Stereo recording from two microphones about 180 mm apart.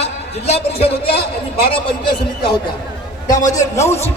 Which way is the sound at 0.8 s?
30° left (ahead or behind).